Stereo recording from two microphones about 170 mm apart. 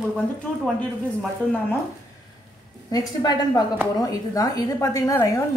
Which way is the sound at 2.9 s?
25° left (ahead or behind).